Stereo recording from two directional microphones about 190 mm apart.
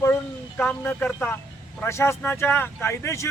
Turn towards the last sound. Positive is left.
turn(degrees=15)  # may be behind; listen again after turning